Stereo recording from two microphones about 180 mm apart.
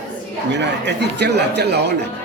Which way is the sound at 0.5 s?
75° right (ahead or behind).